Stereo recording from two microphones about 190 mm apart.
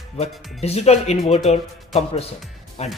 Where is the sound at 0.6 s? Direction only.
35° left (ahead or behind).